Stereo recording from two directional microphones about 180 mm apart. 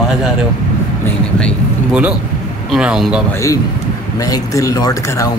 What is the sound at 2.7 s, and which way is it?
Speech, 5° right (ahead or behind).